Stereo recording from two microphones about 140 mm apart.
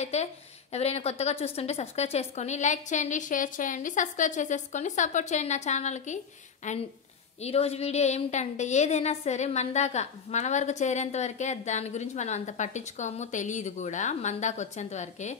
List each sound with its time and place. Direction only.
0.0 s a woman's voice: 50° left (ahead or behind)
7.4 s a woman's voice: 45° left (ahead or behind)